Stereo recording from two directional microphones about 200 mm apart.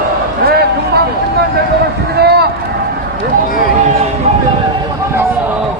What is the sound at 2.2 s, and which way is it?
Boat, 55° right (ahead or behind).